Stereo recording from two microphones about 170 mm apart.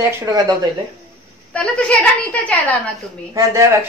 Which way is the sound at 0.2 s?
20° right (ahead or behind).